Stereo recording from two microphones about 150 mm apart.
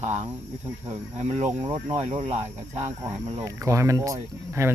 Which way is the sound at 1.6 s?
30° right (ahead or behind).